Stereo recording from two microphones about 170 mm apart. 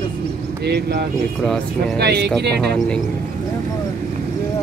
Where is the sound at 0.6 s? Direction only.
75° right (ahead or behind).